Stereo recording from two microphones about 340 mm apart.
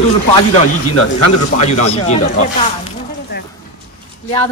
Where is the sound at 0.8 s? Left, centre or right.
Left.